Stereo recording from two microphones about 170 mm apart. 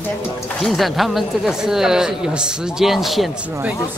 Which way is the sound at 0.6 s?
Centre (ahead or behind).